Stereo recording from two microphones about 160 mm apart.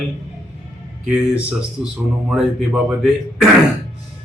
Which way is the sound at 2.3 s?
5° right (ahead or behind).